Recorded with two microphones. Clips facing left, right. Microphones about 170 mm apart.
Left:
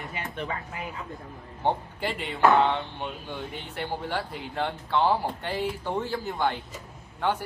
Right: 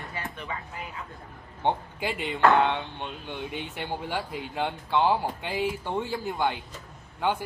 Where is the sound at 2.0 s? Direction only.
5° right (ahead or behind).